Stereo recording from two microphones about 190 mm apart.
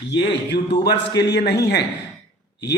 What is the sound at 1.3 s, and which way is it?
Speech, 60° left (ahead or behind).